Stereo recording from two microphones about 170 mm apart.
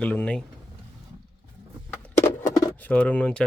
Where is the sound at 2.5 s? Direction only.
20° left (ahead or behind).